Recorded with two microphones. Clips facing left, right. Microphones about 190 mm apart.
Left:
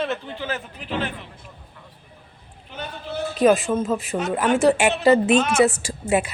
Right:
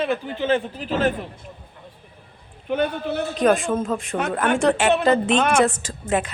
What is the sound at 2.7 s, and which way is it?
Speech, 60° right (ahead or behind).